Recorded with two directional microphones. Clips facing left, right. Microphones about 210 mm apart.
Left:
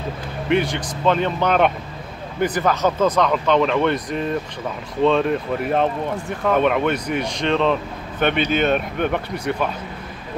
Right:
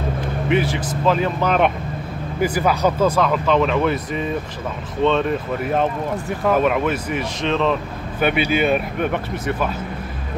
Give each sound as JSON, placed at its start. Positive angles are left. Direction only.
{"t": 0.5, "sound": "speech", "side_deg": -5}